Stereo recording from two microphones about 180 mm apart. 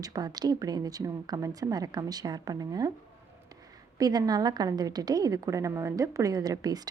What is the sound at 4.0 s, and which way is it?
Speech, 20° right (ahead or behind).